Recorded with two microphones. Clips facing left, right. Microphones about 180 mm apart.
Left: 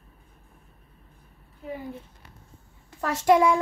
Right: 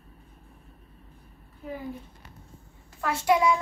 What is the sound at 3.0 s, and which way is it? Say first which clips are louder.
Speech: left 4 dB; 45° left (ahead or behind).